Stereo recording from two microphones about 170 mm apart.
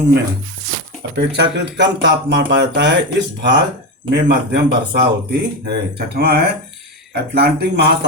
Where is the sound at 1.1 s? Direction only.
85° right.